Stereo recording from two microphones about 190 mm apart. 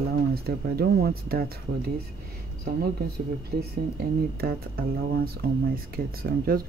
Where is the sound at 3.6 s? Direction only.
55° right (ahead or behind).